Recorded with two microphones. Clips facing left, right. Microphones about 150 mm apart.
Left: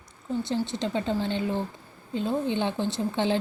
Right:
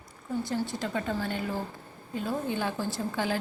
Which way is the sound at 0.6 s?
25° left (ahead or behind).